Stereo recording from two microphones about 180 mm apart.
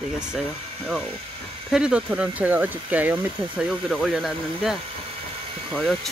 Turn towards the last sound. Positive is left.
turn(degrees=0)  # may be behind; listen again after turning